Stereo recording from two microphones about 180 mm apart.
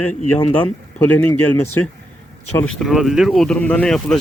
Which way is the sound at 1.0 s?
10° left (ahead or behind).